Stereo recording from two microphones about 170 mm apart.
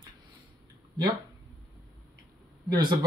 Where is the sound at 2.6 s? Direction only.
25° right (ahead or behind).